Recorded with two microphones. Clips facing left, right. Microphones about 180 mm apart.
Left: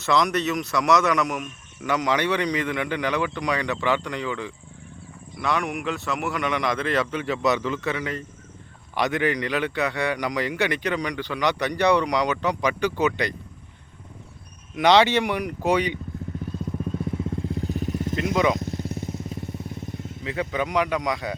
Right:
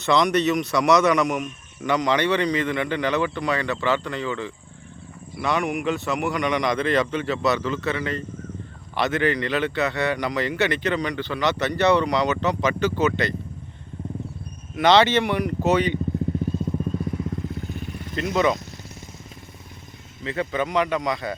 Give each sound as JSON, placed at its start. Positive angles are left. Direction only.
{"t": 0.0, "sound": "speech", "side_deg": 0}
{"t": 5.4, "sound": "a man's voice", "side_deg": 0}
{"t": 14.8, "sound": "speech", "side_deg": 10}
{"t": 17.0, "sound": "vehicle", "side_deg": 25}
{"t": 18.3, "sound": "speech", "side_deg": 10}
{"t": 18.6, "sound": "motorcycle", "side_deg": 55}
{"t": 20.2, "sound": "speech", "side_deg": 10}